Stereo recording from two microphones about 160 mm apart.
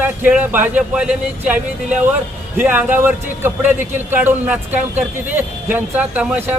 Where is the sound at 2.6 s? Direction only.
10° right (ahead or behind).